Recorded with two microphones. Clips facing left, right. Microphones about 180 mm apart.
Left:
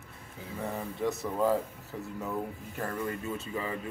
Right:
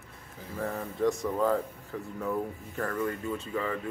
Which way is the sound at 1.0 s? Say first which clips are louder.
Right 3 dB; 5° left (ahead or behind).